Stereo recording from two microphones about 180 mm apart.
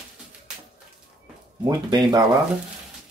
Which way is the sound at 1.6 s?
25° right (ahead or behind).